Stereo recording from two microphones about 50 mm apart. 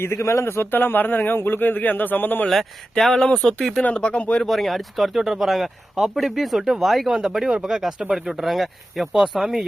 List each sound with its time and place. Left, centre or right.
0.0 s a man's voice: left
2.5 s speech: centre
3.9 s speech: left
4.4 s speech: centre